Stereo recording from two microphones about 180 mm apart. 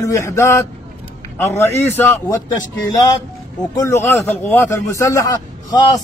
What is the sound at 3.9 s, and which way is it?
A man's voice, 15° left (ahead or behind).